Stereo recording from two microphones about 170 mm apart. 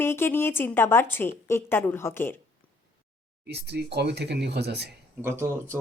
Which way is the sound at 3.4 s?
75° right (ahead or behind).